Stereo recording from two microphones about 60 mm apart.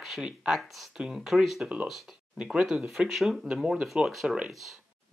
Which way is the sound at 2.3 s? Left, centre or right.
Centre.